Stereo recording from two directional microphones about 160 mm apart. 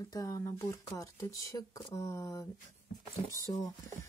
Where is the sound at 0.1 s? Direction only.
20° left (ahead or behind).